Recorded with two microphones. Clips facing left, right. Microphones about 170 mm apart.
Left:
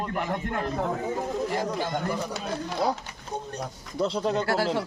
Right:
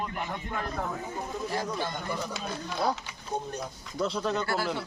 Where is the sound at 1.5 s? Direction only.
15° left (ahead or behind).